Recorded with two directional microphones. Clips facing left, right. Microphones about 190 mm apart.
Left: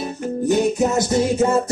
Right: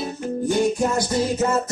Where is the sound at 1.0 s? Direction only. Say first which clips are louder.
Left 4 dB; 25° left (ahead or behind).